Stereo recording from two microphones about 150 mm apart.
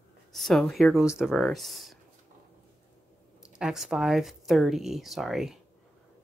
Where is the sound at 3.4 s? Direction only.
5° right (ahead or behind).